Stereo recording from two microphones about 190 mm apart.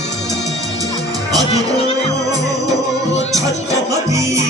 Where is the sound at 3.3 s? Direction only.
15° right (ahead or behind).